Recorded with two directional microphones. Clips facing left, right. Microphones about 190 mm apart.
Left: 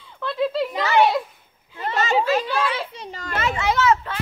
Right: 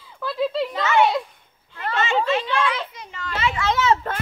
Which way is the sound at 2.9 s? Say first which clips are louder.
Left 1 dB; 35° left (ahead or behind).